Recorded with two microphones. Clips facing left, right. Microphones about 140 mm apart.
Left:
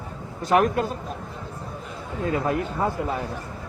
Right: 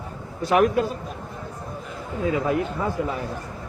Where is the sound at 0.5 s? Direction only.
45° left (ahead or behind).